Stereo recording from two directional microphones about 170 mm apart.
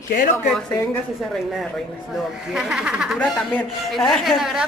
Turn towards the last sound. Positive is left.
turn(degrees=0)  # may be behind; listen again after turning